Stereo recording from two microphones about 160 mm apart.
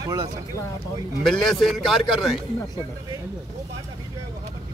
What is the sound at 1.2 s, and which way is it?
Speech, centre (ahead or behind).